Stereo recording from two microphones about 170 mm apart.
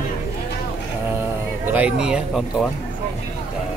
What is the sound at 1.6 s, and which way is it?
Speech, 10° right (ahead or behind).